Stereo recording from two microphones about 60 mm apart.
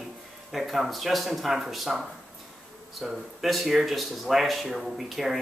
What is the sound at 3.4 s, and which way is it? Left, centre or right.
Speech, centre.